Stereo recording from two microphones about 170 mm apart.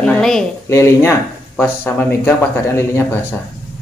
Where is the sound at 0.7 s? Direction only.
15° left (ahead or behind).